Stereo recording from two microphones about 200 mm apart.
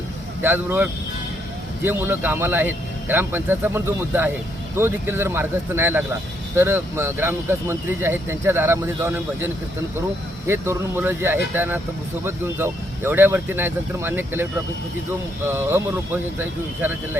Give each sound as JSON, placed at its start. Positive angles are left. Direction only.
{"t": 0.4, "sound": "speech", "side_deg": -10}
{"t": 15.4, "sound": "speech", "side_deg": -10}